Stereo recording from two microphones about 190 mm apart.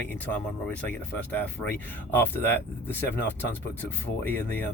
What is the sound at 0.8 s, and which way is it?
Speech, 10° left (ahead or behind).